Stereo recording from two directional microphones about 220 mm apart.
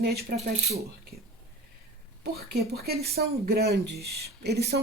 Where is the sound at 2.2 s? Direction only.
50° right (ahead or behind).